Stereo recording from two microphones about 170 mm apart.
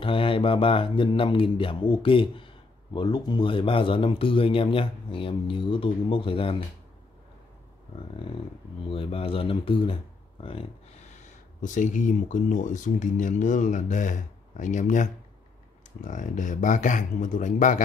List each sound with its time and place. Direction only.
0.0 s speech: 30° left (ahead or behind)
8.9 s speech: 30° left (ahead or behind)
11.6 s speech: 50° left (ahead or behind)